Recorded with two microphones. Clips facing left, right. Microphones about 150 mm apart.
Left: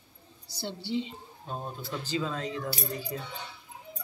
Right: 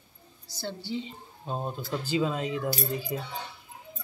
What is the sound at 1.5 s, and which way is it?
Speech, 20° right (ahead or behind).